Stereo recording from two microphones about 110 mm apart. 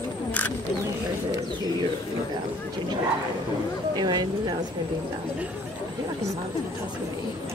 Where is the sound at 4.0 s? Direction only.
40° right (ahead or behind).